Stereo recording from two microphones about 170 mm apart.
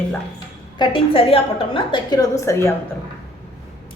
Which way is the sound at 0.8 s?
30° left (ahead or behind).